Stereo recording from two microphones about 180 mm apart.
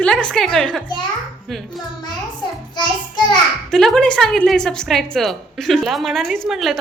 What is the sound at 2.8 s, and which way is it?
Speech, 25° left (ahead or behind).